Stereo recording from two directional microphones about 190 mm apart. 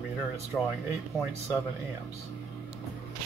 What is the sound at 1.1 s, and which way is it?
Speech, 15° right (ahead or behind).